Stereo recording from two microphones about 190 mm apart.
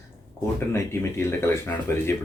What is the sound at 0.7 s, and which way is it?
Speech, 15° left (ahead or behind).